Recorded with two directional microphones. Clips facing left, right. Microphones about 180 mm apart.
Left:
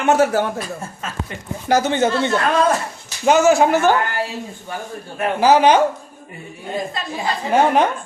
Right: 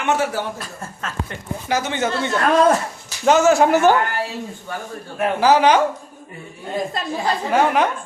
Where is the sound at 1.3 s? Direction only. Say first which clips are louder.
Left 1 dB; 10° left (ahead or behind).